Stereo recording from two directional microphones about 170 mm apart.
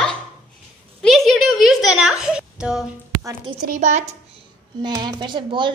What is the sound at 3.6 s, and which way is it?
Speech, 45° right (ahead or behind).